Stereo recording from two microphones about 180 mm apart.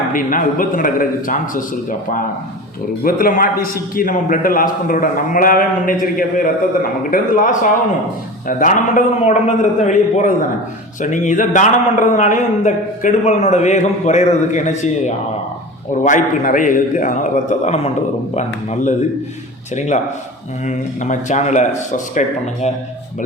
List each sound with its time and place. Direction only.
0.1 s a man's voice: 50° left (ahead or behind)